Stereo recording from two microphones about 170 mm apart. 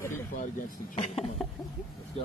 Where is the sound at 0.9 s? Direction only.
35° left (ahead or behind).